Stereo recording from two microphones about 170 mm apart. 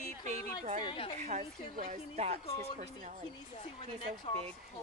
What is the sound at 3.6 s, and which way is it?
Speech, 35° left (ahead or behind).